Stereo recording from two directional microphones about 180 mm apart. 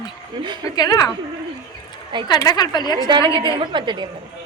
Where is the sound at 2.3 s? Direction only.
20° left (ahead or behind).